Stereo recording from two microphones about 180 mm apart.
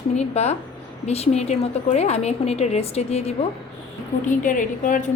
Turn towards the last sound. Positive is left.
turn(degrees=45)  # may be behind; listen again after turning